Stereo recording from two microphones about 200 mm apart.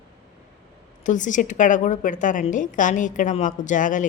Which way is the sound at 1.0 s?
40° left (ahead or behind).